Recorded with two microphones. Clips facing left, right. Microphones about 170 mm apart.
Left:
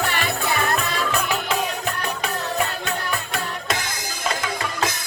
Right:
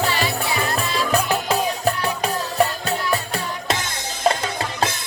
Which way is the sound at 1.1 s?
40° right (ahead or behind).